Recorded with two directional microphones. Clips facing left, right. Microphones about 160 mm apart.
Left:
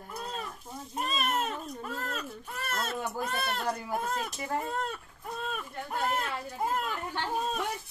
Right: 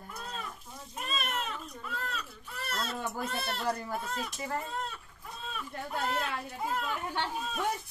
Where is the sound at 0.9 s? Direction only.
40° left (ahead or behind).